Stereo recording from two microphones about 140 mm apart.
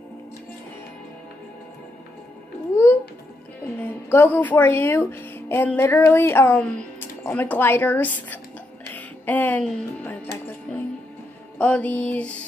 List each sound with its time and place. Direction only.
2.7 s music: 20° left (ahead or behind)
4.1 s a woman's voice: 15° left (ahead or behind)
8.9 s music: 10° left (ahead or behind)
11.5 s a woman's voice: 10° left (ahead or behind)